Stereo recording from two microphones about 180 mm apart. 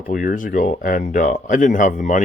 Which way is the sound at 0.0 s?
50° left (ahead or behind).